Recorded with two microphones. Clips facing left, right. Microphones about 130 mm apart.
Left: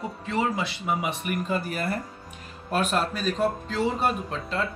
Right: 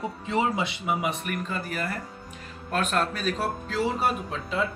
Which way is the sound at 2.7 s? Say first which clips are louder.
Left 1 dB; 5° left (ahead or behind).